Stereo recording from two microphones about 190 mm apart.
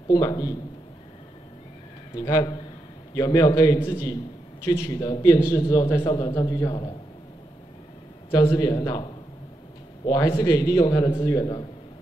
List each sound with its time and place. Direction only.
0.1 s a man's voice: 20° left (ahead or behind)
2.1 s a man's voice: 20° left (ahead or behind)
8.3 s a man's voice: 15° left (ahead or behind)